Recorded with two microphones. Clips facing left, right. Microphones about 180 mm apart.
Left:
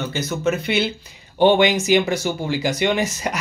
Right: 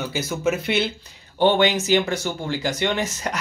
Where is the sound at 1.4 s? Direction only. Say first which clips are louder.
Left 3 dB; 15° left (ahead or behind).